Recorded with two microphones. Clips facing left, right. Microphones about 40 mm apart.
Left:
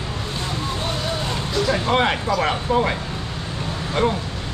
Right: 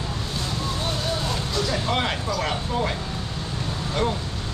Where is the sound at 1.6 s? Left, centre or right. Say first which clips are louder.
Left 7 dB; left.